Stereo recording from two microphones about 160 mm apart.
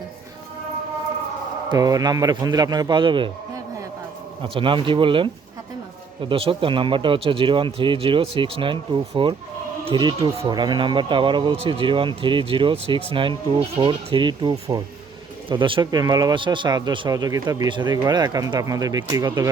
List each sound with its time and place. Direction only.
1.7 s speech: 20° right (ahead or behind)
4.4 s speech: 35° right (ahead or behind)